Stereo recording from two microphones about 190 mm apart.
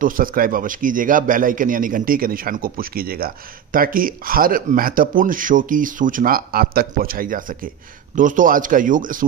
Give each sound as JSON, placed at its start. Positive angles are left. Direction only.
{"t": 0.0, "sound": "a man's voice", "side_deg": -45}